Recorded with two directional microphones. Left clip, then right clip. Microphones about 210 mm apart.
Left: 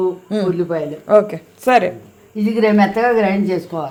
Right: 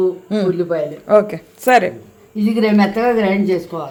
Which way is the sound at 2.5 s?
25° left (ahead or behind).